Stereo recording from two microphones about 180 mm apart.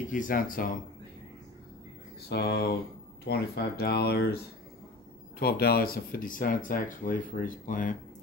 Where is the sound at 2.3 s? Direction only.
65° left (ahead or behind).